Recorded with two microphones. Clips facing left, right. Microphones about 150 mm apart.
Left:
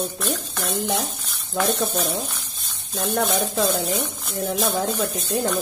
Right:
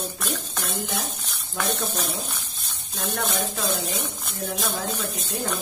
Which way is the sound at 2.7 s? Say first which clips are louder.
Left 5 dB; centre (ahead or behind).